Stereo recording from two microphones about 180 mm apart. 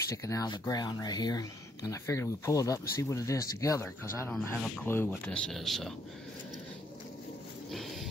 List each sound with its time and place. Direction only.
0.1 s speech: 20° left (ahead or behind)
4.3 s speech: centre (ahead or behind)
4.8 s speech: 10° left (ahead or behind)
7.7 s a sound: centre (ahead or behind)